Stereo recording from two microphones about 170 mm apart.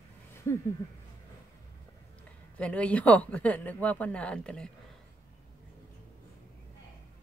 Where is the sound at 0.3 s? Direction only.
15° left (ahead or behind).